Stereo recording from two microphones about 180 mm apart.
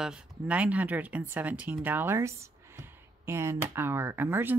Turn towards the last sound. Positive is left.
turn(degrees=-10)  # may be behind; listen again after turning